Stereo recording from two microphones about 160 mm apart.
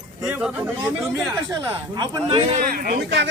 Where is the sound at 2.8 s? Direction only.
80° right.